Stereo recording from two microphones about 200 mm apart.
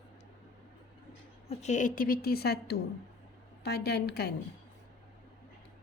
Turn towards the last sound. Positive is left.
turn(degrees=55)  # may be behind; listen again after turning